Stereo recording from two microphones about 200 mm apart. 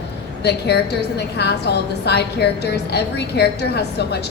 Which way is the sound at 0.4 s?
55° left (ahead or behind).